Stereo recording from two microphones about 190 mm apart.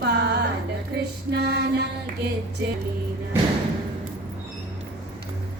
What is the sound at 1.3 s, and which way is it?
Female singing, 60° right (ahead or behind).